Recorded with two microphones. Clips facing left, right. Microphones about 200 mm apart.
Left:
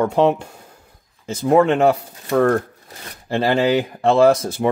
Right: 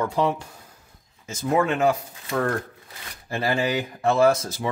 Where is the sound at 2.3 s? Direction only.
40° left (ahead or behind).